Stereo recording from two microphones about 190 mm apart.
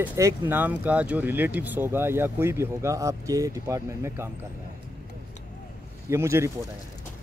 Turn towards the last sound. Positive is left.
turn(degrees=-15)  # may be behind; listen again after turning